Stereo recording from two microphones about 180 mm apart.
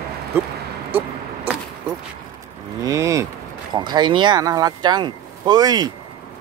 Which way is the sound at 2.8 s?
15° right (ahead or behind).